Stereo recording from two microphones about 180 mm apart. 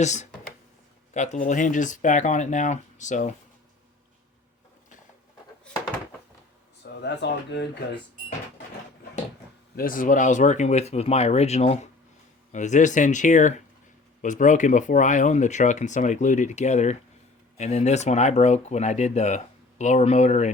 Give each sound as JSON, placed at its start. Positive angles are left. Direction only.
{"t": 0.0, "sound": "speech", "side_deg": 40}
{"t": 7.0, "sound": "speech", "side_deg": 70}
{"t": 9.7, "sound": "speech", "side_deg": 50}